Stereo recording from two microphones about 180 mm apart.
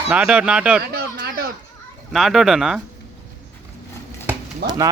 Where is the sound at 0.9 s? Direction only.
55° right (ahead or behind).